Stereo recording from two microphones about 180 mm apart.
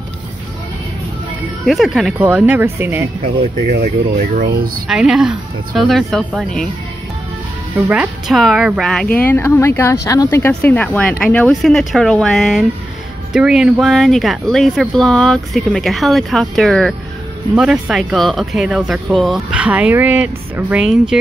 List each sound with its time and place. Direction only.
1.7 s speech: centre (ahead or behind)
3.6 s speech: 60° right (ahead or behind)
4.8 s speech: 5° right (ahead or behind)
7.9 s speech: 5° right (ahead or behind)